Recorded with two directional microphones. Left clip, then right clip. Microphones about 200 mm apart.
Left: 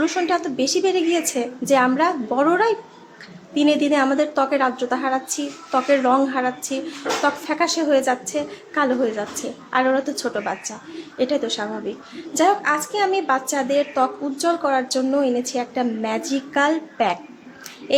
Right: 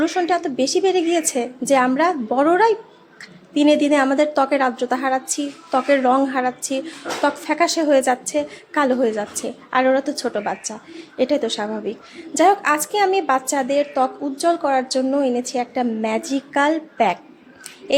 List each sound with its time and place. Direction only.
0.0 s a woman's voice: 20° right (ahead or behind)